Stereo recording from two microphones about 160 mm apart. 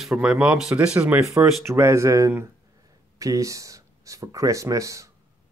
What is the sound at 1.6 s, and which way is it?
Speech, 15° right (ahead or behind).